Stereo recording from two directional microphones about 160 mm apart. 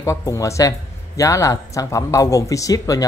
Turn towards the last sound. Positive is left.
turn(degrees=20)  # may be behind; listen again after turning